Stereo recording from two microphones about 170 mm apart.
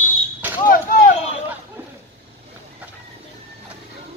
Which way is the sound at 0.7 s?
55° left (ahead or behind).